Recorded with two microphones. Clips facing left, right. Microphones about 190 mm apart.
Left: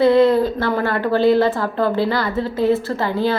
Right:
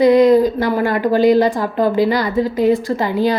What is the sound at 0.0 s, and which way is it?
Speech, 15° right (ahead or behind).